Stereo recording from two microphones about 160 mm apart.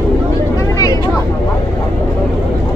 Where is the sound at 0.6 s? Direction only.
20° left (ahead or behind).